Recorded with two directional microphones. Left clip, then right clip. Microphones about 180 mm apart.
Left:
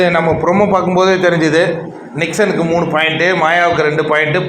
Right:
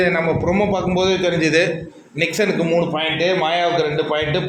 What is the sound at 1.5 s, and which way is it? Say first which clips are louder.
A man's voice: left 4 dB; 10° right (ahead or behind).